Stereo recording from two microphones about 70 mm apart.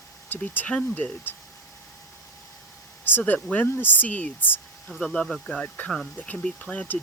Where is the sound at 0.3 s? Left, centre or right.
Left.